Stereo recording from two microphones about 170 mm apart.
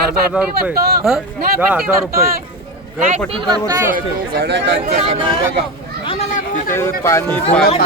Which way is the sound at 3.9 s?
70° right (ahead or behind).